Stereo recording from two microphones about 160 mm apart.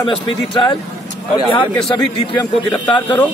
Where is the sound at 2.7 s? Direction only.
30° left (ahead or behind).